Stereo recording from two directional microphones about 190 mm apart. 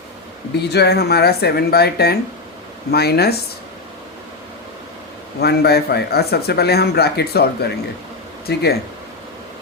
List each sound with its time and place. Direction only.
0.5 s a man's voice: 60° left (ahead or behind)
5.4 s a man's voice: 55° left (ahead or behind)